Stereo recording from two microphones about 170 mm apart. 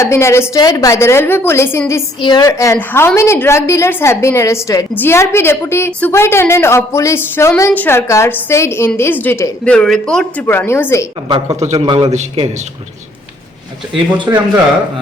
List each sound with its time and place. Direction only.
0.0 s a woman's voice: 15° left (ahead or behind)
2.2 s a woman's voice: 25° left (ahead or behind)
11.3 s a man's voice: 25° right (ahead or behind)
11.6 s a man's voice: 40° right (ahead or behind)
11.9 s a man's voice: 30° right (ahead or behind)
14.3 s speech: 15° right (ahead or behind)